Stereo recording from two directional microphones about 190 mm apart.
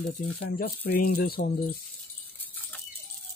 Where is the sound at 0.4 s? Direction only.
55° left (ahead or behind).